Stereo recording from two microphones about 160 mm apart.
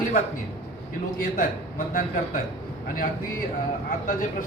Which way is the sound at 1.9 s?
60° left (ahead or behind).